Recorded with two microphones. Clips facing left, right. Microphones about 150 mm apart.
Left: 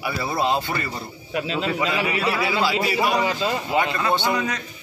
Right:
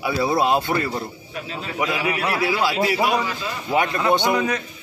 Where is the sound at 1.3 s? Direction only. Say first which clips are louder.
Left 10 dB; 90° left.